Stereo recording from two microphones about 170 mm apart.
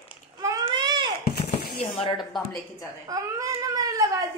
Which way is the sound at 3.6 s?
20° right (ahead or behind).